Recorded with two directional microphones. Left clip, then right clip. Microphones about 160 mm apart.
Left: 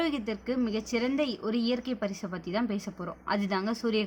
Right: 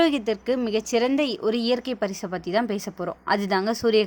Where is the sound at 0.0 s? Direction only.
55° right (ahead or behind).